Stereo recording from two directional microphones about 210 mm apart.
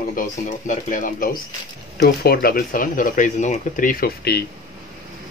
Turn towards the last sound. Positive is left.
turn(degrees=45)  # may be behind; listen again after turning